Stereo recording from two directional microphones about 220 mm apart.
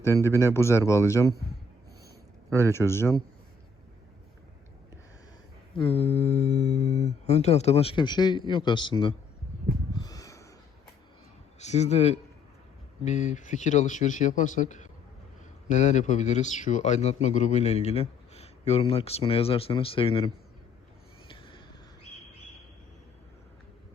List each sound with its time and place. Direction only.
0.0 s speech: 10° left (ahead or behind)
2.6 s speech: 10° left (ahead or behind)
5.7 s speech: 25° left (ahead or behind)
9.9 s a sound: 15° left (ahead or behind)
11.6 s speech: 30° left (ahead or behind)
21.2 s a sound: 25° left (ahead or behind)